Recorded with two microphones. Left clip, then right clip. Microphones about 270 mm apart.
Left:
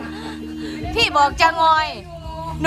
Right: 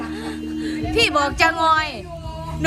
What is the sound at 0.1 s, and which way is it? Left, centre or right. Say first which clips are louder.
Music: right 2 dB; left.